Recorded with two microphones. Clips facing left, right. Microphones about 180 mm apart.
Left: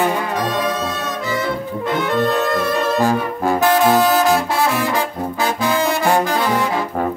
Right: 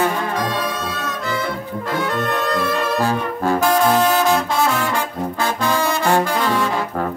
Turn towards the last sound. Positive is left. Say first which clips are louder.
# left 1 dB
turn(degrees=15)  # may be behind; listen again after turning